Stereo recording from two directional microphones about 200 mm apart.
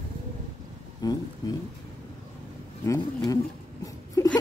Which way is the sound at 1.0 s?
20° left (ahead or behind).